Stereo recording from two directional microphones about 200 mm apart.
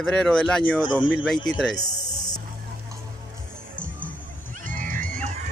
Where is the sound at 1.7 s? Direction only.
20° left (ahead or behind).